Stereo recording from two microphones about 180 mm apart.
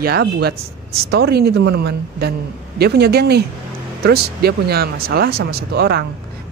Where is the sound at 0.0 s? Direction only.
60° right (ahead or behind).